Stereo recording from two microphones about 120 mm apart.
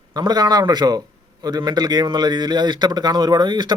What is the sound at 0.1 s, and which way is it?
A man's voice, 35° right (ahead or behind).